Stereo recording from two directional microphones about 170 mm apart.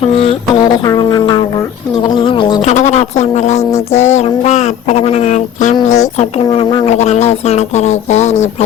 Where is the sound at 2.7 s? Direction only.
45° left (ahead or behind).